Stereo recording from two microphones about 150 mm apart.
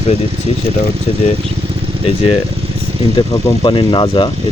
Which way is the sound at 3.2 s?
35° left (ahead or behind).